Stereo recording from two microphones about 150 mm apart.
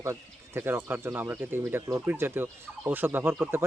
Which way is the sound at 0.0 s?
15° right (ahead or behind).